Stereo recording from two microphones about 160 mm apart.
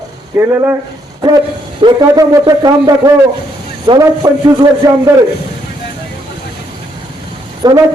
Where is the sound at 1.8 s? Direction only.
25° right (ahead or behind).